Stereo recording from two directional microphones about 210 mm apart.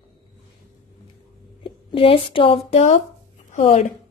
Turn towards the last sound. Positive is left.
turn(degrees=30)  # may be behind; listen again after turning